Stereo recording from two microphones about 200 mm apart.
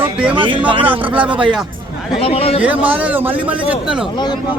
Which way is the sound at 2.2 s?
30° left (ahead or behind).